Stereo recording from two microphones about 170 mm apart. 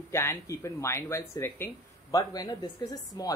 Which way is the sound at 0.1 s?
15° left (ahead or behind).